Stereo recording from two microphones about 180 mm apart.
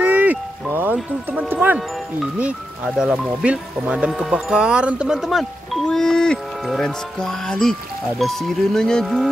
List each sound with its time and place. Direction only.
0.0 s music: 10° right (ahead or behind)
3.0 s speech: 5° right (ahead or behind)